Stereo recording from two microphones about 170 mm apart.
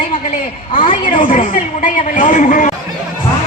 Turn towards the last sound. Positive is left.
turn(degrees=45)  # may be behind; listen again after turning